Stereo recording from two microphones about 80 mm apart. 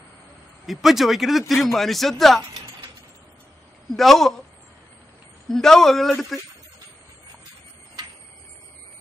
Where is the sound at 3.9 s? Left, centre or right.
Centre.